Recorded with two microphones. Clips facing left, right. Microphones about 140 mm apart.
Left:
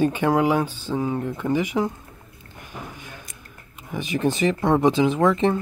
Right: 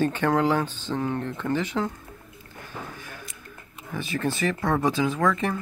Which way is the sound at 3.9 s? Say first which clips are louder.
Left 5 dB; 15° left (ahead or behind).